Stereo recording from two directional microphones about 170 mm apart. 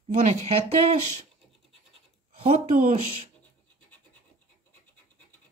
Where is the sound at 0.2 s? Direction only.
40° right (ahead or behind).